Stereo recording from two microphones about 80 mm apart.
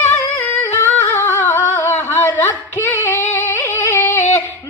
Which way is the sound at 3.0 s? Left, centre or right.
Left.